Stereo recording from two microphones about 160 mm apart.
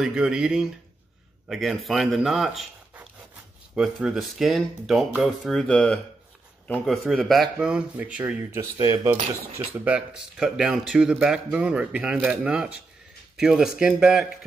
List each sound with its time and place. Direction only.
0.0 s speech: 5° right (ahead or behind)
3.7 s speech: 5° right (ahead or behind); by 9.1 s 20° right (ahead or behind)
9.5 s speech: 40° right (ahead or behind)
9.8 s speech: 10° right (ahead or behind)